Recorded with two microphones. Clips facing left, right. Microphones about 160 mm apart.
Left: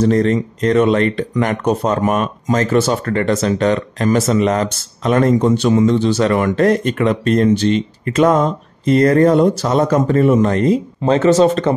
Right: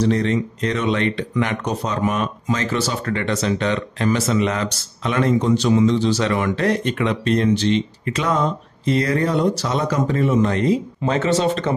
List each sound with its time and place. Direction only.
0.0 s speech: 45° left (ahead or behind)